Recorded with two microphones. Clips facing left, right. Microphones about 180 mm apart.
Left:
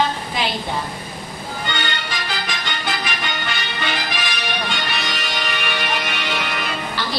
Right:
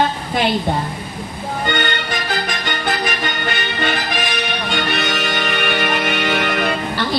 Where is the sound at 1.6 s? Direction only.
50° right (ahead or behind).